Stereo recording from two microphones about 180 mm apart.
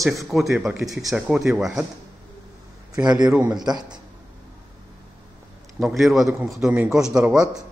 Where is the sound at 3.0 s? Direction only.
10° right (ahead or behind).